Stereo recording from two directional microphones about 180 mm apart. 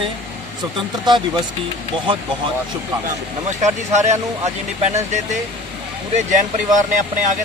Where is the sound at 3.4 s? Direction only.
40° right (ahead or behind).